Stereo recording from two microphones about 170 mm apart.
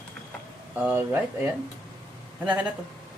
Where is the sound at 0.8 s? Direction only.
10° right (ahead or behind).